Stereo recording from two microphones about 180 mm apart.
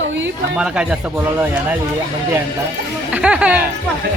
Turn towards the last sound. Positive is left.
turn(degrees=-5)  # may be behind; listen again after turning